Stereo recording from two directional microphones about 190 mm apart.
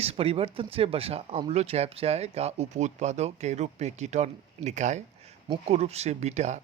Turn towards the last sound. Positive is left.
turn(degrees=-35)  # may be behind; listen again after turning